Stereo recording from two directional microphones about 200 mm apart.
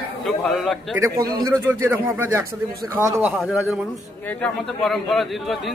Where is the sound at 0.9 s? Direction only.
15° right (ahead or behind).